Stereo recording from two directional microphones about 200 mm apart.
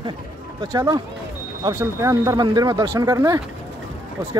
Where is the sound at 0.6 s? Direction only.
15° right (ahead or behind).